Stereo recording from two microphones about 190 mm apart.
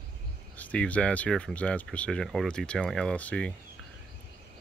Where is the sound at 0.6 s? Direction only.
5° left (ahead or behind).